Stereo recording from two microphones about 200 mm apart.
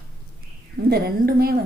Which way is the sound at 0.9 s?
50° right (ahead or behind).